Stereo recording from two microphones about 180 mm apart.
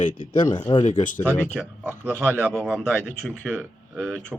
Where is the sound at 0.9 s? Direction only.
45° left (ahead or behind).